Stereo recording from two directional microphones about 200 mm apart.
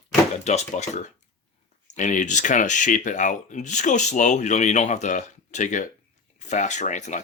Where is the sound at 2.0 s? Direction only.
40° left (ahead or behind).